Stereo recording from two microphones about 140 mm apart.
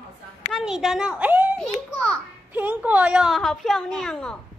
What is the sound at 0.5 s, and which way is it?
A child's voice, centre (ahead or behind).